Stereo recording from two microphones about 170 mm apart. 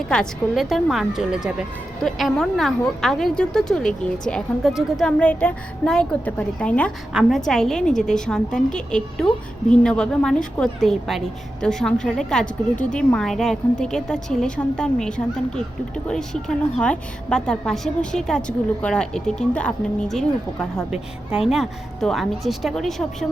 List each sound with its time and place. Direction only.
0.1 s a woman's voice: centre (ahead or behind)